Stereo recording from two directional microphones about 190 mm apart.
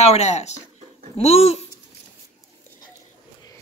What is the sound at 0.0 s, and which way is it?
Speech, 35° left (ahead or behind).